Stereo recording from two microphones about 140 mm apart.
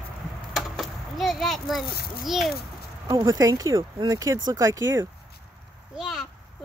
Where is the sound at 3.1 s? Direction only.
25° right (ahead or behind).